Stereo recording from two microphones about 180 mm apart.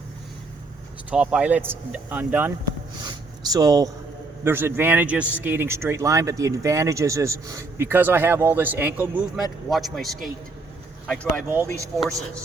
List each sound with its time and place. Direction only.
1.1 s speech: 5° right (ahead or behind)
3.0 s a sound: 20° right (ahead or behind)
4.4 s speech: 10° right (ahead or behind); by 11.4 s 5° left (ahead or behind)
11.4 s speech: 10° right (ahead or behind)